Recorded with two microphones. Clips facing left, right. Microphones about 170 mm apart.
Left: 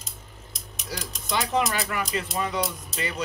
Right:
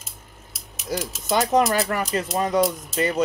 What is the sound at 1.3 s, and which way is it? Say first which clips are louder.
Speech: right 6 dB; 45° right (ahead or behind).